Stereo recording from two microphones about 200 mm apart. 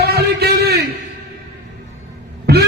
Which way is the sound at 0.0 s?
55° right (ahead or behind).